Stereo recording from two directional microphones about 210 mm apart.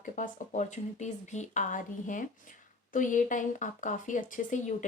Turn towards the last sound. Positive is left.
turn(degrees=35)  # may be behind; listen again after turning